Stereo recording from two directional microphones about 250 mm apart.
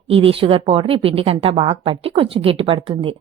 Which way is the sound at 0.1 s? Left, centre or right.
Right.